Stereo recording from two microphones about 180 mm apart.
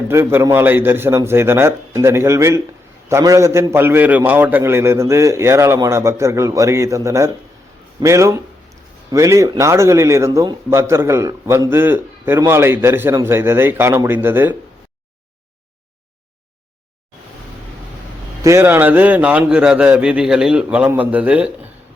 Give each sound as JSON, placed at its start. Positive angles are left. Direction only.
{"t": 0.1, "sound": "speech", "side_deg": -15}
{"t": 18.4, "sound": "speech", "side_deg": -15}